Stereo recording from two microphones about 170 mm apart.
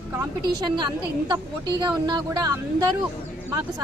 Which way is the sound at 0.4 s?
25° right (ahead or behind).